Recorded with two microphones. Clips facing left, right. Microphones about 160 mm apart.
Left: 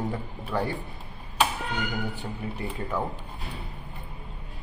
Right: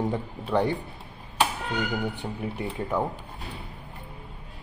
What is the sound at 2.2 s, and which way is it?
Speech, 15° right (ahead or behind).